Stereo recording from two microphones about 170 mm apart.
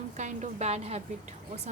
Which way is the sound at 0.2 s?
40° right (ahead or behind).